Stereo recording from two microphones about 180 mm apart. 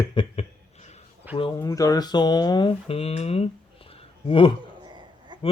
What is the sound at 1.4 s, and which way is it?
Speech, 25° left (ahead or behind).